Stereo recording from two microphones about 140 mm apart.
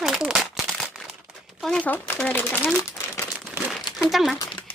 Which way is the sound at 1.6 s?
5° left (ahead or behind).